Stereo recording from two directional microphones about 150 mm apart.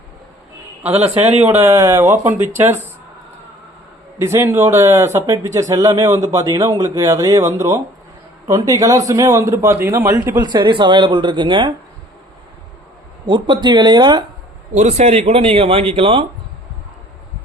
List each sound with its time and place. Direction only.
1.1 s speech: 45° right (ahead or behind)
1.5 s speech: 20° right (ahead or behind)
4.2 s speech: 15° right (ahead or behind)
10.4 s speech: 30° right (ahead or behind)
13.2 s speech: 30° right (ahead or behind)
14.7 s speech: 50° right (ahead or behind)